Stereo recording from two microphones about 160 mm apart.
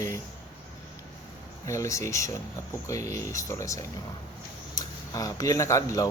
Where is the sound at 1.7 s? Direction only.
20° left (ahead or behind).